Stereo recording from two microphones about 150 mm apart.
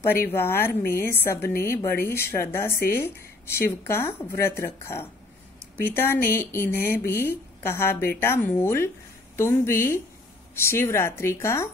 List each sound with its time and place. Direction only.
0.0 s speech: 15° left (ahead or behind)